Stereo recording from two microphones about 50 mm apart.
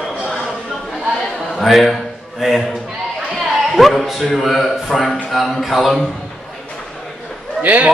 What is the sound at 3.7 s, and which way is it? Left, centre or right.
Speech, centre.